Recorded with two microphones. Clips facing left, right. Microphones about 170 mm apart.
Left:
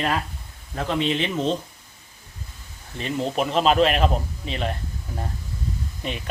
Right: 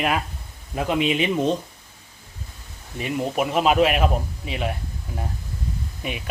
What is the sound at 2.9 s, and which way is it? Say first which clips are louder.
Speech: right 1 dB; 10° right (ahead or behind).